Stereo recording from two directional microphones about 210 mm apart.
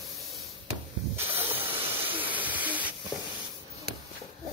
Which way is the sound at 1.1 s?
10° right (ahead or behind).